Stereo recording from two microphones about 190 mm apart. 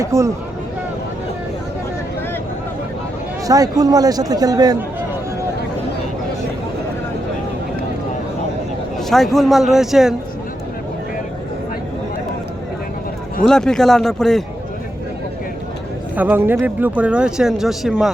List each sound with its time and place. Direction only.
0.0 s speech: 15° right (ahead or behind)
3.4 s a man's voice: 20° right (ahead or behind)
9.0 s speech: centre (ahead or behind)
13.5 s speech: 5° left (ahead or behind)
16.1 s speech: 10° right (ahead or behind)